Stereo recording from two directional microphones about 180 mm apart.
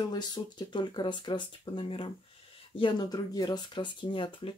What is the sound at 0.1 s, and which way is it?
Speech, 25° left (ahead or behind).